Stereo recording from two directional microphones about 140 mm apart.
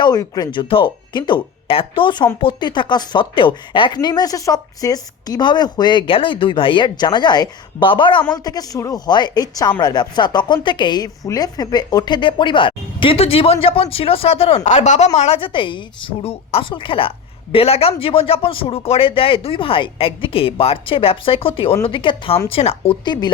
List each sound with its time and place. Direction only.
0.0 s speech: 30° left (ahead or behind); by 15.4 s 55° left (ahead or behind)
15.4 s speech: 40° left (ahead or behind)